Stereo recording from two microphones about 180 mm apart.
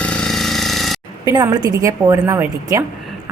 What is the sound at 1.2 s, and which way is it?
A woman's voice, 20° right (ahead or behind).